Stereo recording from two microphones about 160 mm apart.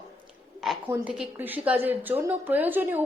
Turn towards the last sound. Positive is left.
turn(degrees=-10)  # may be behind; listen again after turning